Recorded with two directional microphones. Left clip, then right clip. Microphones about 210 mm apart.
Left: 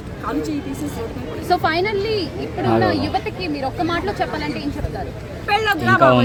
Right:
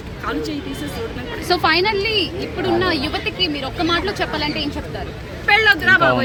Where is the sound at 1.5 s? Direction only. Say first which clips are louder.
Right 2 dB; 20° right (ahead or behind).